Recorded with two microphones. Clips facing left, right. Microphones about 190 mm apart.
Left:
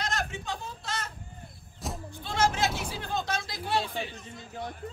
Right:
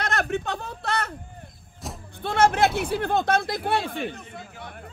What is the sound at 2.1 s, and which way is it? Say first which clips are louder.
Speech: right 7 dB; 60° right (ahead or behind).